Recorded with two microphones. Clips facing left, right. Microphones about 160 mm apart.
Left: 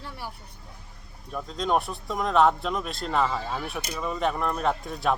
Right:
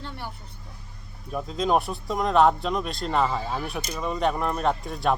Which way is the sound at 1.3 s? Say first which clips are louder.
Right 2 dB; 5° right (ahead or behind).